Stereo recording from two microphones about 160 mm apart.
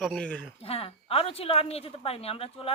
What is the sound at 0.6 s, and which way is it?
A woman's voice, 35° left (ahead or behind).